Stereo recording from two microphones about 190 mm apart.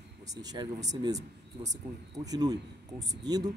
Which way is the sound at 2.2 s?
20° right (ahead or behind).